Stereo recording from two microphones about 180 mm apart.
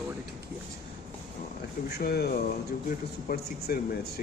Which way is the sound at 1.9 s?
60° left (ahead or behind).